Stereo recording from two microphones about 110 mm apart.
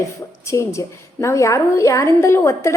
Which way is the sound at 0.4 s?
25° left (ahead or behind).